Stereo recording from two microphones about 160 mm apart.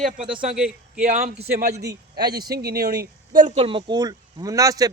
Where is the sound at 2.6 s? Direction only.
75° right (ahead or behind); by 3.6 s 55° right (ahead or behind).